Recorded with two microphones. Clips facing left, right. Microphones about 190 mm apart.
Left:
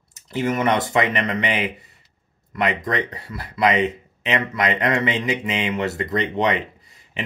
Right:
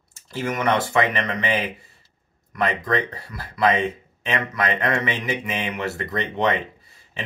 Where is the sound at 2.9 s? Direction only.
25° left (ahead or behind).